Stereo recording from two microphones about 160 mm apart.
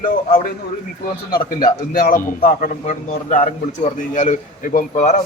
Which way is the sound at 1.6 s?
60° left (ahead or behind).